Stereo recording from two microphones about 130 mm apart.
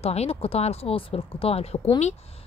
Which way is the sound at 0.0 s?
50° left (ahead or behind).